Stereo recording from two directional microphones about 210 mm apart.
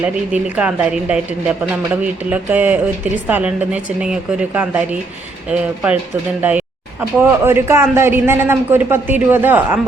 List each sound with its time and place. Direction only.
0.0 s speech: 5° right (ahead or behind)